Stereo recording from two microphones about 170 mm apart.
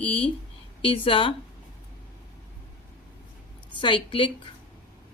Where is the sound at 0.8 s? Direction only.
30° left (ahead or behind).